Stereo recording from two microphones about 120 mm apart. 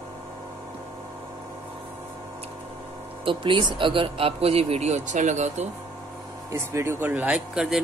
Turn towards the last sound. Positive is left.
turn(degrees=-10)  # may be behind; listen again after turning